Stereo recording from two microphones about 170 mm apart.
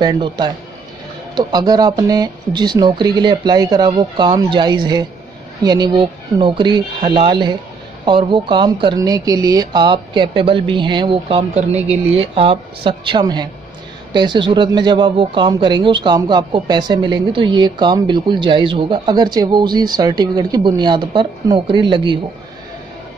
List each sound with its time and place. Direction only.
0.0 s speech: 25° right (ahead or behind)